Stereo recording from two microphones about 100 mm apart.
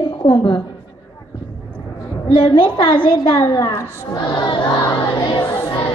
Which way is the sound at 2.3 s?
55° left (ahead or behind).